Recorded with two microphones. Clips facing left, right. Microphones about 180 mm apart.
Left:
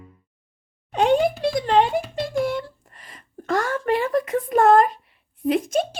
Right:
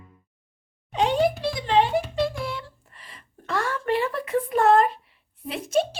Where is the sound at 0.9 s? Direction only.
50° left (ahead or behind).